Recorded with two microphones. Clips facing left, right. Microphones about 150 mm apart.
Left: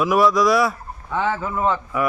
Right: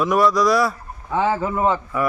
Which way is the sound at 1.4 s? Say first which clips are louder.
Right 2 dB; 15° right (ahead or behind).